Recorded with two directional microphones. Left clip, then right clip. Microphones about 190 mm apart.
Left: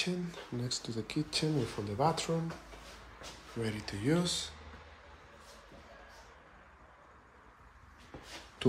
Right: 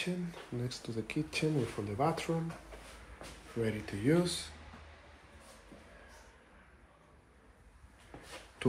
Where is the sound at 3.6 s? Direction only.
5° left (ahead or behind).